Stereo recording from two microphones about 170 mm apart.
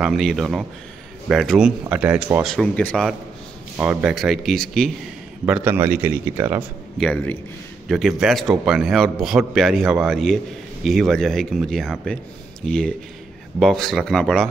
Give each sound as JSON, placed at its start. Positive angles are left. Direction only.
{"t": 0.0, "sound": "a man's voice", "side_deg": 0}
{"t": 2.4, "sound": "a man's voice", "side_deg": 5}
{"t": 3.7, "sound": "a man's voice", "side_deg": -10}
{"t": 5.5, "sound": "speech", "side_deg": -10}
{"t": 7.0, "sound": "a man's voice", "side_deg": 10}